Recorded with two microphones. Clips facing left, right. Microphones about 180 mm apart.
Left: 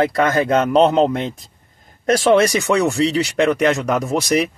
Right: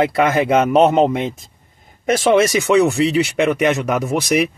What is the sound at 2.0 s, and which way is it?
Speech, 5° right (ahead or behind).